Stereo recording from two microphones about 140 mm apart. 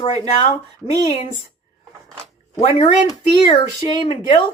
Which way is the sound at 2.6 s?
40° left (ahead or behind).